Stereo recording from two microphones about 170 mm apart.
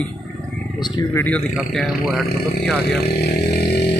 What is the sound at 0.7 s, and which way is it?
Speech, 25° left (ahead or behind).